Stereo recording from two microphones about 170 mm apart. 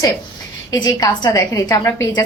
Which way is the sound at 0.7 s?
25° left (ahead or behind).